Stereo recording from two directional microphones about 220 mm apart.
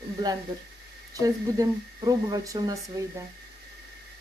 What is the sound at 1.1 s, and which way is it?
Speech, 15° right (ahead or behind).